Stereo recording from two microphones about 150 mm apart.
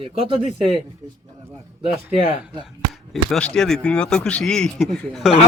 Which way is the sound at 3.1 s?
5° left (ahead or behind).